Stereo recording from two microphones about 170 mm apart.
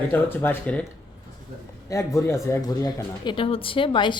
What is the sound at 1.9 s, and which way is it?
A woman's voice, 20° left (ahead or behind).